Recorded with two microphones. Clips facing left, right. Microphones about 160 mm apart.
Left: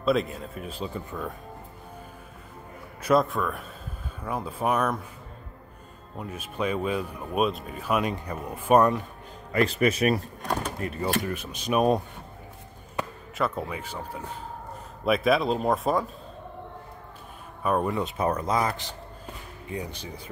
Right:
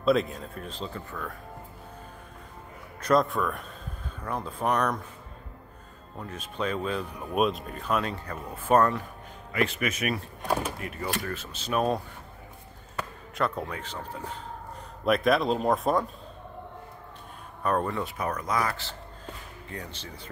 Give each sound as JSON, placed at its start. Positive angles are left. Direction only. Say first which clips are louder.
{"t": 0.0, "sound": "speech", "louder": "right 1 dB", "side_deg": 0}
{"t": 3.0, "sound": "speech", "louder": "left 1 dB", "side_deg": 5}
{"t": 6.1, "sound": "speech", "louder": "left 2 dB", "side_deg": 10}
{"t": 9.5, "sound": "a man's voice", "louder": "left 5 dB", "side_deg": 35}
{"t": 11.2, "sound": "speech", "louder": "left 4 dB", "side_deg": 15}
{"t": 13.4, "sound": "speech", "louder": "left 1 dB", "side_deg": 5}
{"t": 15.0, "sound": "speech", "louder": "left 1 dB", "side_deg": 0}
{"t": 17.6, "sound": "speech", "louder": "left 2 dB", "side_deg": 10}